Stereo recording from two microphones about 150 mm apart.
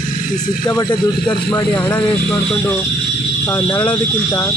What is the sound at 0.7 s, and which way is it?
Speech, 30° left (ahead or behind).